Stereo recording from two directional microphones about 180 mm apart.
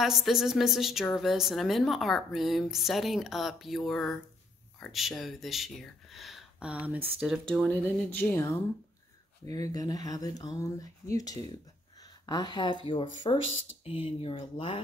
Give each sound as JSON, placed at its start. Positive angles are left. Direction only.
{"t": 0.0, "sound": "a woman's voice", "side_deg": 0}
{"t": 12.0, "sound": "a sound", "side_deg": 20}
{"t": 12.8, "sound": "speech", "side_deg": 25}